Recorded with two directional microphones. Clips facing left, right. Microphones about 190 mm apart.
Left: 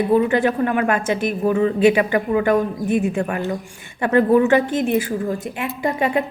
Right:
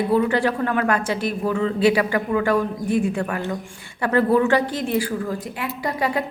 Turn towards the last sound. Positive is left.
turn(degrees=25)  # may be behind; listen again after turning